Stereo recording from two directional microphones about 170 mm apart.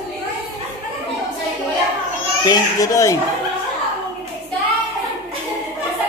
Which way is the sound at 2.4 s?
20° left (ahead or behind).